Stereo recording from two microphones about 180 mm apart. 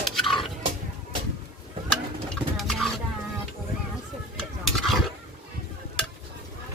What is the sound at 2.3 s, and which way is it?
Bird, centre (ahead or behind).